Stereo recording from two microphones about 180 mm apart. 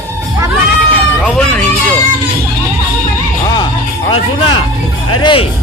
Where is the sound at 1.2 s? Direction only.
5° left (ahead or behind).